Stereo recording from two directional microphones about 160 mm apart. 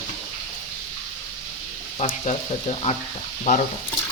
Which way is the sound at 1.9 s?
45° left (ahead or behind).